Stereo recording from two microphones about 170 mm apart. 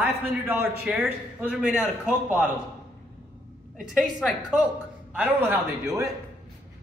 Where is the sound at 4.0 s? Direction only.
Centre (ahead or behind); by 6.1 s 15° right (ahead or behind).